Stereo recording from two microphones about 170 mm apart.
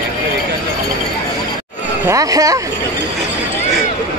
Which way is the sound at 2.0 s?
20° right (ahead or behind).